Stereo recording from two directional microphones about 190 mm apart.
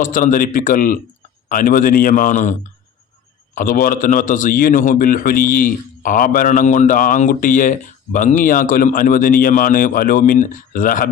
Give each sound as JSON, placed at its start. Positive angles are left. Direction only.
{"t": 0.0, "sound": "a man's voice", "side_deg": 45}